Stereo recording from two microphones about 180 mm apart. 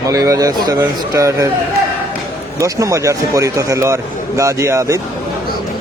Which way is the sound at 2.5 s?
20° right (ahead or behind).